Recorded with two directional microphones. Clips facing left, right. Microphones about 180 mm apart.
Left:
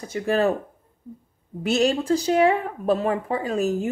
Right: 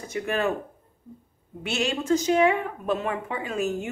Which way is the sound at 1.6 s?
40° left (ahead or behind).